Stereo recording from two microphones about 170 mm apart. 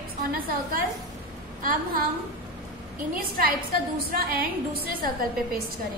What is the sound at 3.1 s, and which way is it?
A woman's voice, 55° right (ahead or behind).